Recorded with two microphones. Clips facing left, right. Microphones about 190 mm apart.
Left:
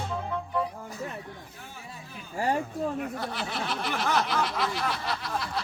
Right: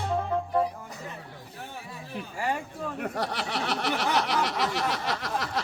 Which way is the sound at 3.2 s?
80° right.